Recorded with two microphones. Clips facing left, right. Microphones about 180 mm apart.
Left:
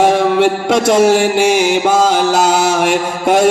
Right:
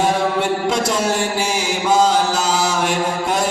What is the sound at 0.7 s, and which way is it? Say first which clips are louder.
Mantra: left 9 dB; 80° left.